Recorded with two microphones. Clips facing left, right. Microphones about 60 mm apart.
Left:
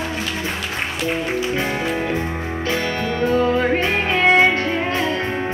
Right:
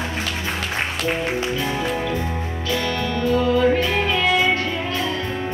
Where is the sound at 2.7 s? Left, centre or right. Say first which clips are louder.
Even; left.